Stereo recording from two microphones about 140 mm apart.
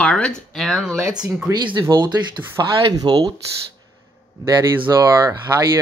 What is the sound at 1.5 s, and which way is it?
Speech, 30° right (ahead or behind).